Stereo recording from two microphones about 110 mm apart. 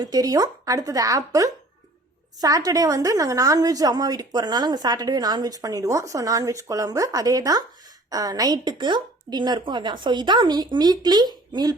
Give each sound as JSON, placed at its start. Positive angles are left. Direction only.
{"t": 0.0, "sound": "a woman's voice", "side_deg": -35}